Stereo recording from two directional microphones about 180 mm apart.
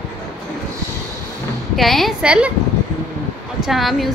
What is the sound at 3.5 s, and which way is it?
Speech, centre (ahead or behind).